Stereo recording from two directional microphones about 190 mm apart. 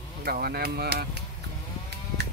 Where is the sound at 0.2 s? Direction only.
55° right (ahead or behind).